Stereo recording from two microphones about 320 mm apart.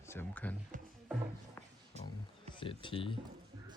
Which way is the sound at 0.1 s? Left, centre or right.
Centre.